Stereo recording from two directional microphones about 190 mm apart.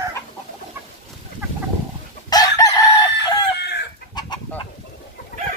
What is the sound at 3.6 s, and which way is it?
Chicken, 65° left (ahead or behind).